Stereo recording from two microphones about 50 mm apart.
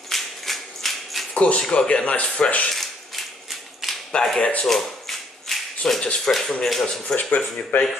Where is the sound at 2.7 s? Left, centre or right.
Centre.